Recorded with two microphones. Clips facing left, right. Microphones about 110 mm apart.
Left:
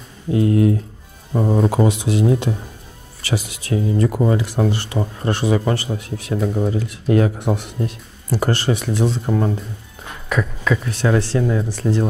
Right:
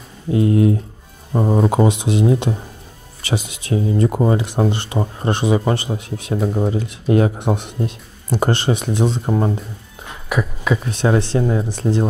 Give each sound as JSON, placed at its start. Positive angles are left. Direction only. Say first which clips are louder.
{"t": 0.3, "sound": "speech", "louder": "right 1 dB", "side_deg": -25}